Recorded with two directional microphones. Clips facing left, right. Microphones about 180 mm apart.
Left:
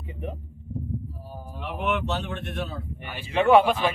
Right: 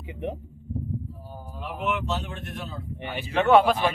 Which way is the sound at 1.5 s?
65° left (ahead or behind).